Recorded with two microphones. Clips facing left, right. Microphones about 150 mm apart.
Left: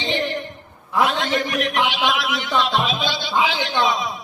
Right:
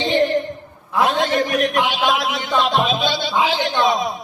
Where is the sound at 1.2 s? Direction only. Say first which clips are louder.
Right 4 dB; 50° right (ahead or behind).